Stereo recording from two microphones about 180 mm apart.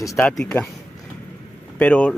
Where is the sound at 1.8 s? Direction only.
10° left (ahead or behind).